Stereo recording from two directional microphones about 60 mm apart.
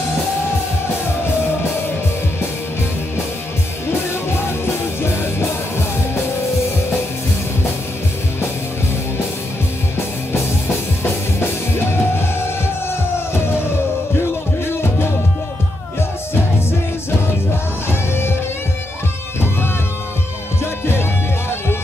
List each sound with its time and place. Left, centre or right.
4.6 s music: left
11.3 s music: left
14.7 s music: left
17.8 s music: left
20.8 s music: left